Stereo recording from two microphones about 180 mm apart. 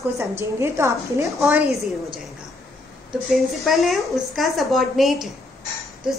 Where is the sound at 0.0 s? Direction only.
15° right (ahead or behind).